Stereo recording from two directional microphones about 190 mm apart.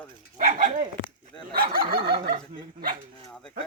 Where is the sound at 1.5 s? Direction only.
50° right (ahead or behind).